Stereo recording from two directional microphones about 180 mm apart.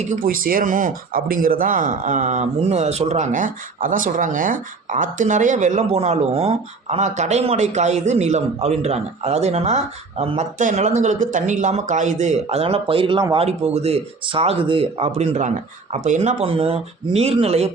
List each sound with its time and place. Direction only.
0.0 s speech: 45° right (ahead or behind)